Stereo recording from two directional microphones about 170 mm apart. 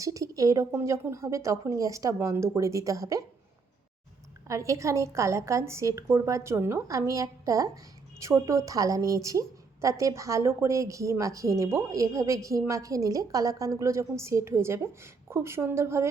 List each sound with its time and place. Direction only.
0.0 s a woman's voice: 20° right (ahead or behind)
4.4 s a woman's voice: 20° right (ahead or behind)